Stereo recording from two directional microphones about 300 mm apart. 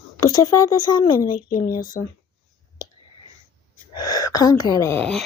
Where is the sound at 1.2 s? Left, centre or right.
Left.